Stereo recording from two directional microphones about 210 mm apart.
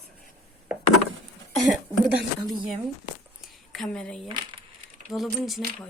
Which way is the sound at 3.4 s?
Centre (ahead or behind).